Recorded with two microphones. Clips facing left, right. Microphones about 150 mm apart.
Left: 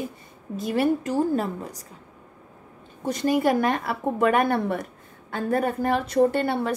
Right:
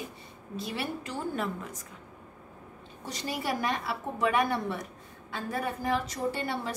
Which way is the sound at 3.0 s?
50° left (ahead or behind).